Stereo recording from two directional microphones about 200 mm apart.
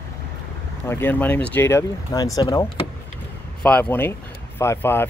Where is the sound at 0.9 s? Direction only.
10° left (ahead or behind).